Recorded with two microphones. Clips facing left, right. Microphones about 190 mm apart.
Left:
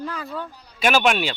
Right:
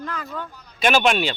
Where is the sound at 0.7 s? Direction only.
5° left (ahead or behind).